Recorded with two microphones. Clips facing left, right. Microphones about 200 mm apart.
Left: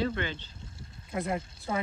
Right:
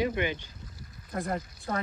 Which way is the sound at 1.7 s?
10° left (ahead or behind).